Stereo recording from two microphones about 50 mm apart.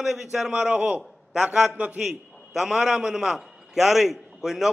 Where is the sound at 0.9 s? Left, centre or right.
Right.